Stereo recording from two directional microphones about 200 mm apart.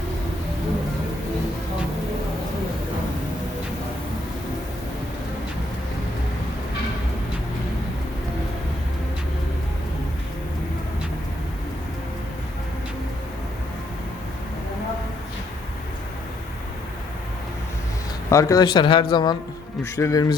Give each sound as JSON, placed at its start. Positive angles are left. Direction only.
{"t": 18.3, "sound": "speech", "side_deg": 15}